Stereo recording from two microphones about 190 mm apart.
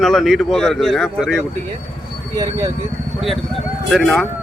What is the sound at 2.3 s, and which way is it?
Speech, 20° right (ahead or behind).